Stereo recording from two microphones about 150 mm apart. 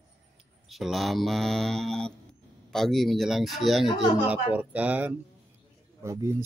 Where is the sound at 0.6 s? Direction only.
Centre (ahead or behind).